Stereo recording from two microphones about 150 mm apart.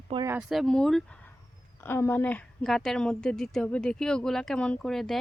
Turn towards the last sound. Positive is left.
turn(degrees=0)  # may be behind; listen again after turning